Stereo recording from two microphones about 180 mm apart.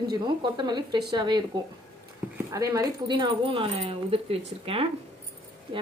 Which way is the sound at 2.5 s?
20° right (ahead or behind).